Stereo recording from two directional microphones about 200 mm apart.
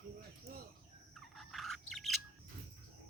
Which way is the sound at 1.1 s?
Centre (ahead or behind).